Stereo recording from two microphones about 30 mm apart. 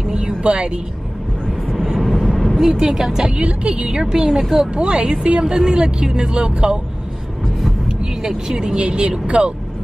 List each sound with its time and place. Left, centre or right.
0.1 s a sound: right
2.0 s vehicle: centre
2.6 s speech: centre
3.3 s a woman's voice: right
4.0 s speech: right
4.7 s a woman's voice: right
5.4 s speech: right
8.2 s speech: centre
8.5 s a woman's voice: right